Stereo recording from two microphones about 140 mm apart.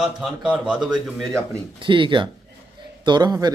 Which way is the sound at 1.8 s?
35° right (ahead or behind).